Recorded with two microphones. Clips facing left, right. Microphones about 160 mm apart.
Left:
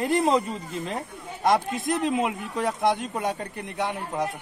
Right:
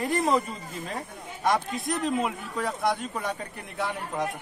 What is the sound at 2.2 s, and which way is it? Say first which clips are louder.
Speech: left 3 dB; 20° left (ahead or behind).